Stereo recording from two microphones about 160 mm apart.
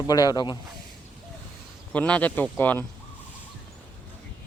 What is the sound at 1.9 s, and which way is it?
Speech, 10° left (ahead or behind).